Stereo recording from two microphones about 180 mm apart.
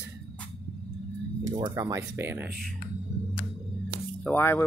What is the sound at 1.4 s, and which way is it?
Speech, 20° right (ahead or behind).